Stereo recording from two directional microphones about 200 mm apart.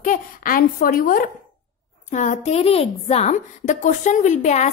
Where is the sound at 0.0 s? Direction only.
40° left (ahead or behind).